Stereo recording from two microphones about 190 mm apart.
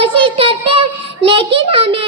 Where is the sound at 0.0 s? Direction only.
30° right (ahead or behind).